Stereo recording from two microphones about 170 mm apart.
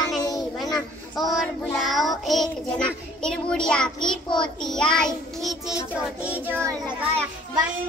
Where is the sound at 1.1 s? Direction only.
Centre (ahead or behind).